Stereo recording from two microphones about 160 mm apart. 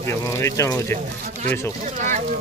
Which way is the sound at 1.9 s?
50° right (ahead or behind).